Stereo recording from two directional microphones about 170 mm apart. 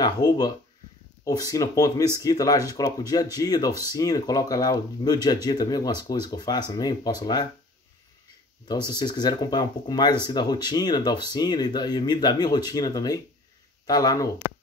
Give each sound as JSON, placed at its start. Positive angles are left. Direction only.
{"t": 0.0, "sound": "speech", "side_deg": 25}
{"t": 8.6, "sound": "speech", "side_deg": 25}